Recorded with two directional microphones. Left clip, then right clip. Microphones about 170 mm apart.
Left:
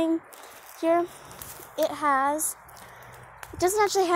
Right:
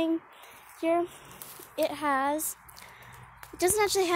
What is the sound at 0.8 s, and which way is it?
Speech, 5° right (ahead or behind).